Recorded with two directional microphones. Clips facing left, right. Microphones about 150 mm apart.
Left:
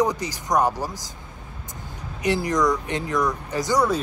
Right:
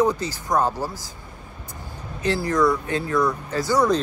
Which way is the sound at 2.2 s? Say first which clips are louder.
Right 1 dB; 15° left (ahead or behind).